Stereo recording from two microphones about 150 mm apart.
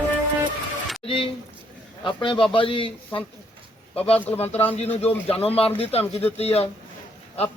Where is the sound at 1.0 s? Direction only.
40° left (ahead or behind).